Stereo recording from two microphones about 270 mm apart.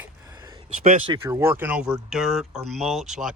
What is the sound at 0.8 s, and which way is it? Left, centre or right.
Speech, right.